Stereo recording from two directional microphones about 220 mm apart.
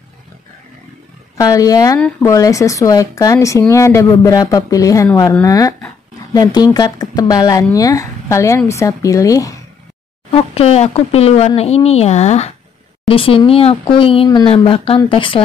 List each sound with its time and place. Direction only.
1.4 s a woman's voice: 15° left (ahead or behind)
2.0 s a woman's voice: 5° left (ahead or behind)
10.3 s speech: 25° left (ahead or behind)